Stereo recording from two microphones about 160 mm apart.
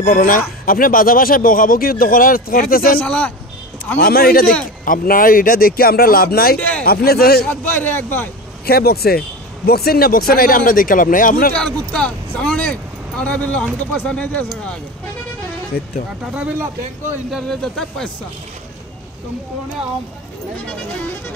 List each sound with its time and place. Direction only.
0.0 s speech: 60° left (ahead or behind)
3.0 s speech: 10° left (ahead or behind)
4.0 s speech: 70° left (ahead or behind)
7.4 s speech: 10° left (ahead or behind)
8.6 s speech: 75° left (ahead or behind)
11.5 s speech: 5° left (ahead or behind)
15.7 s speech: 70° left (ahead or behind)
17.3 s speech: centre (ahead or behind)